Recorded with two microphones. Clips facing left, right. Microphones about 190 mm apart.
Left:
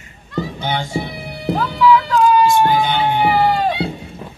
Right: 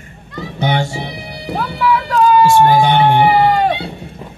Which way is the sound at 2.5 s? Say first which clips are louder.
Right 4 dB; 75° right (ahead or behind).